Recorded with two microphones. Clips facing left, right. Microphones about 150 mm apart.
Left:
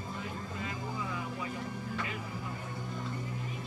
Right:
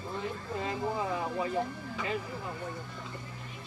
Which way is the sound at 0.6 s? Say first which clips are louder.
Right 8 dB; 35° right (ahead or behind).